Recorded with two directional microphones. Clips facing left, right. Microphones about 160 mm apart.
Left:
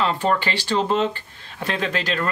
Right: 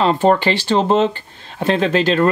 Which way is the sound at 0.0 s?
25° right (ahead or behind).